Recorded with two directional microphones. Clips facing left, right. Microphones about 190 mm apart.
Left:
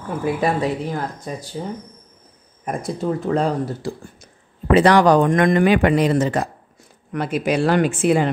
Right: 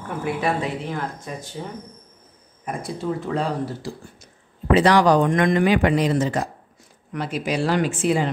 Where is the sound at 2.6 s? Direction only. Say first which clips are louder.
Left 4 dB; 45° left (ahead or behind).